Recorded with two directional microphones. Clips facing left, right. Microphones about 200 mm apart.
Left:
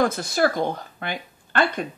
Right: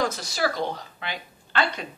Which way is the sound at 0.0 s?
55° left (ahead or behind).